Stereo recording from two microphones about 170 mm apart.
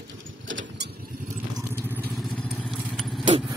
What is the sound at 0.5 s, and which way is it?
Vehicle, 90° right.